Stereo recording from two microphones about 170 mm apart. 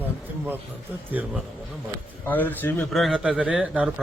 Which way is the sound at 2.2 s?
10° left (ahead or behind).